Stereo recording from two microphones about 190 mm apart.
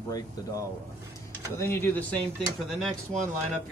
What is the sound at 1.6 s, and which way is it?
Speech, 10° left (ahead or behind).